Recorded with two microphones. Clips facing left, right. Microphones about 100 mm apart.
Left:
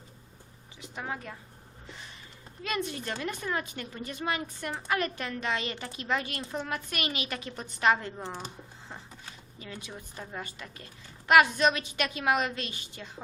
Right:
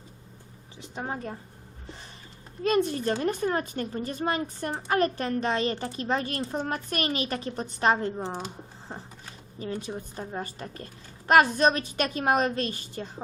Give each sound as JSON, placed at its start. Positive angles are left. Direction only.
{"t": 0.8, "sound": "speech", "side_deg": -35}
{"t": 2.6, "sound": "speech", "side_deg": -40}
{"t": 9.6, "sound": "speech", "side_deg": -35}